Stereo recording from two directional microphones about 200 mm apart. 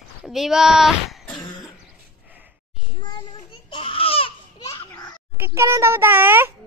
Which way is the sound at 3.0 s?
20° left (ahead or behind).